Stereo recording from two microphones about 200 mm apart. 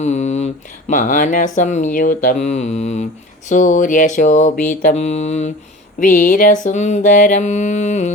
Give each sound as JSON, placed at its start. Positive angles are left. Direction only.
{"t": 0.0, "sound": "speech", "side_deg": 35}